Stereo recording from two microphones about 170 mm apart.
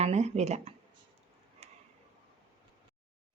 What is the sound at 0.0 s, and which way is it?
Speech, 40° right (ahead or behind).